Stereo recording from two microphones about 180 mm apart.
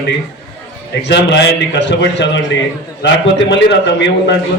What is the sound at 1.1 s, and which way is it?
A man's voice, 75° left (ahead or behind).